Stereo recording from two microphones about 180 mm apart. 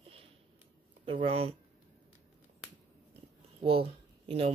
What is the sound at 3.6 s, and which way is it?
Speech, 30° right (ahead or behind).